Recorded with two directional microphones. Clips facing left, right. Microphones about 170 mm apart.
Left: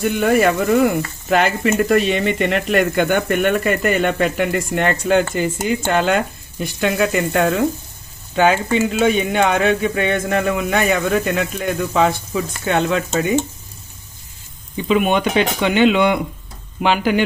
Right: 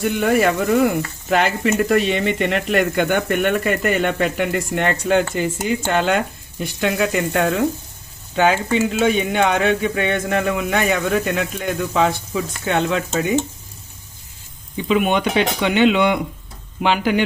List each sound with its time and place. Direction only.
0.2 s speech: 45° left (ahead or behind)
14.8 s speech: 40° left (ahead or behind)